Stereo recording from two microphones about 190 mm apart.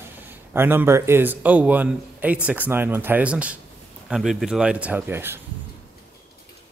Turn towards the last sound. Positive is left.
turn(degrees=-10)  # may be behind; listen again after turning